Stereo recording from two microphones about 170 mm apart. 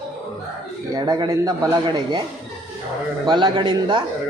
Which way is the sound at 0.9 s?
25° right (ahead or behind).